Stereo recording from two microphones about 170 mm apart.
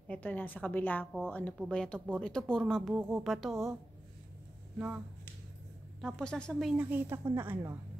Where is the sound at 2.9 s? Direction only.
15° right (ahead or behind).